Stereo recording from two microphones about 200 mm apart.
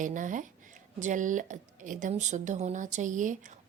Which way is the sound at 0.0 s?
40° right (ahead or behind).